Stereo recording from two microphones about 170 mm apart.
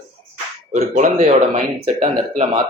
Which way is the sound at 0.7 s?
45° right (ahead or behind).